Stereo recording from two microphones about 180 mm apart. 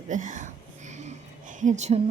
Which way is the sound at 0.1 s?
40° right (ahead or behind).